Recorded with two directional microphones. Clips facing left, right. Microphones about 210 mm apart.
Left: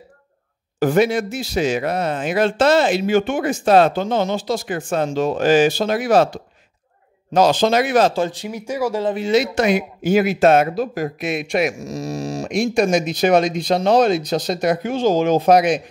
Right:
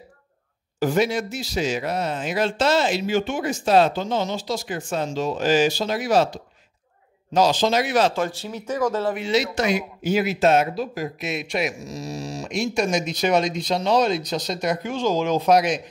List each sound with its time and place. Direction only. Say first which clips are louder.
0.7 s speech: left 5 dB; 55° left (ahead or behind)
8.3 s speech: left 2 dB; 15° left (ahead or behind)
9.3 s speech: left 6 dB; 55° left (ahead or behind)